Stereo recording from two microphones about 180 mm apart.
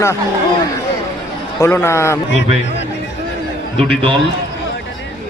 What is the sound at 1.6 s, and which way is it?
Speech, 15° left (ahead or behind).